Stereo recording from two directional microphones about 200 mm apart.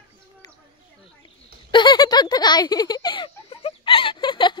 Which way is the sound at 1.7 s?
20° left (ahead or behind).